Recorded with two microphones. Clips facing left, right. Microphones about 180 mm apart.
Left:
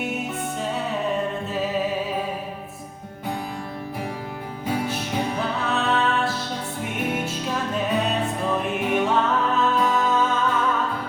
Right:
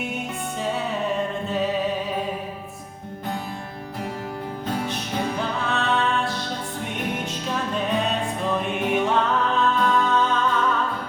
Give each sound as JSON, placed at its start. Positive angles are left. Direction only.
{"t": 4.6, "sound": "music", "side_deg": 10}
{"t": 8.6, "sound": "music", "side_deg": 0}